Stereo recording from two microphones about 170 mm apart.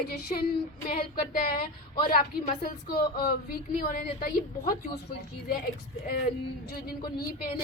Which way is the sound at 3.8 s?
60° left (ahead or behind).